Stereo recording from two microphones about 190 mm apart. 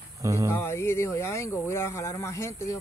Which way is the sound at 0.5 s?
15° left (ahead or behind).